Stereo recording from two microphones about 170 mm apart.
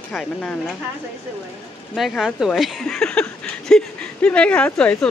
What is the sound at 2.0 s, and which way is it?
Speech, centre (ahead or behind).